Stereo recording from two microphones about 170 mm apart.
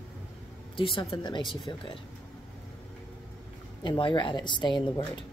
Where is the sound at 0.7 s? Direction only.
30° left (ahead or behind).